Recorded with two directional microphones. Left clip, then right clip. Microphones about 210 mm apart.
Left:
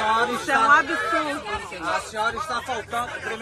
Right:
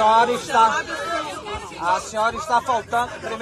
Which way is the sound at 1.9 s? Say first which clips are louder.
Right 4 dB; 25° right (ahead or behind).